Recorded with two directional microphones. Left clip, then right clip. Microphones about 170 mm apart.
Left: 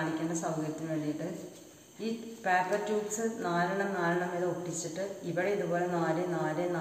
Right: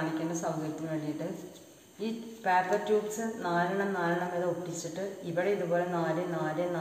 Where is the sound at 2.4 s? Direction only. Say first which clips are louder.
Right 2 dB; centre (ahead or behind).